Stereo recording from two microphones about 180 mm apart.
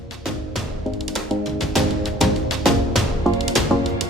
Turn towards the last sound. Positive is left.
turn(degrees=0)  # may be behind; listen again after turning